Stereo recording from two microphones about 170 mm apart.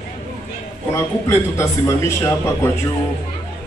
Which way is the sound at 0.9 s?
15° left (ahead or behind).